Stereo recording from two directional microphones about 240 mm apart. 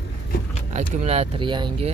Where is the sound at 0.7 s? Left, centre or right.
Right.